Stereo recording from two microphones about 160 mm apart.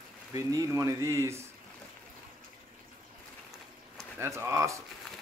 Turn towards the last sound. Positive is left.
turn(degrees=-20)  # may be behind; listen again after turning